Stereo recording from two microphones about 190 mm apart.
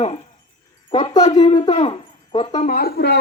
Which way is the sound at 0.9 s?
25° left (ahead or behind).